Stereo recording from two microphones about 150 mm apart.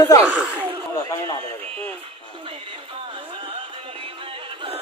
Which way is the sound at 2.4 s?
35° right (ahead or behind).